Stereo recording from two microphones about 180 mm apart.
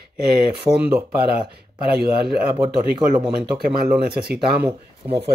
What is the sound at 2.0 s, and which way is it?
Speech, 60° right (ahead or behind).